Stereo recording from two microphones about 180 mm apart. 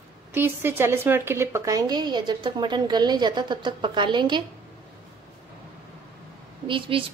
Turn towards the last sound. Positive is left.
turn(degrees=-30)  # may be behind; listen again after turning